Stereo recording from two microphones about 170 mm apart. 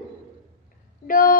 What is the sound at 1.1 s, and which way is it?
Speech, 55° left (ahead or behind).